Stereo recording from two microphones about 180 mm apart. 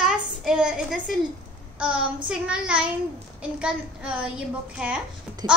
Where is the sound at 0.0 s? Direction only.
5° right (ahead or behind).